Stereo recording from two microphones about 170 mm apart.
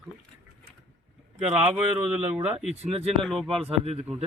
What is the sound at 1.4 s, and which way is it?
Speech, 40° right (ahead or behind).